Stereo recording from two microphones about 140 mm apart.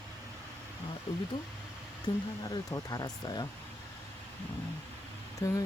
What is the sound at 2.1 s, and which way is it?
Speech, 30° left (ahead or behind).